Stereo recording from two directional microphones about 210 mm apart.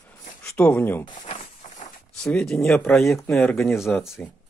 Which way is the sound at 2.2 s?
5° left (ahead or behind).